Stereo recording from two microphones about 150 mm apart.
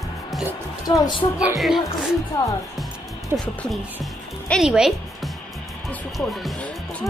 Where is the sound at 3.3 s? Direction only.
10° right (ahead or behind).